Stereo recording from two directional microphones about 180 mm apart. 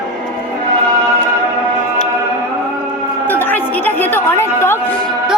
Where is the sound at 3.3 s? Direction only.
10° left (ahead or behind).